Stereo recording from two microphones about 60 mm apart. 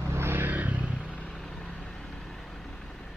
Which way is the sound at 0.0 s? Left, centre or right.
Right.